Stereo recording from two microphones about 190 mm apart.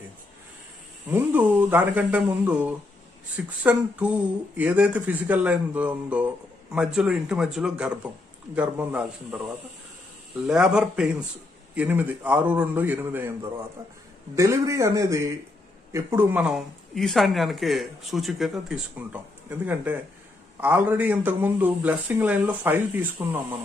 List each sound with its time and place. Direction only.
1.1 s speech: 10° right (ahead or behind)
10.4 s speech: 5° right (ahead or behind)